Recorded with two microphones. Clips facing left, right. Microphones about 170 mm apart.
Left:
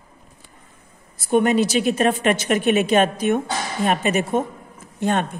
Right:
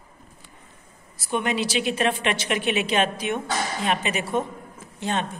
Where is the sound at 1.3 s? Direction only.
45° left (ahead or behind).